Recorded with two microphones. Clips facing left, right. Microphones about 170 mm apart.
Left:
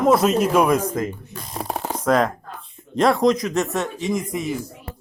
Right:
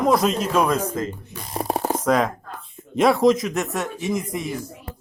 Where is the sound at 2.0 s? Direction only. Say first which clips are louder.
Left 4 dB; centre (ahead or behind).